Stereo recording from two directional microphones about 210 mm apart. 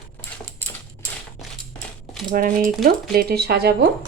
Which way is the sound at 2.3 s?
40° right (ahead or behind).